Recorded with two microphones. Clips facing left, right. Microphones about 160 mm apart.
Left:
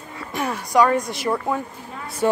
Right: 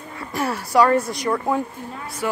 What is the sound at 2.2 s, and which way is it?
Speech, 30° left (ahead or behind).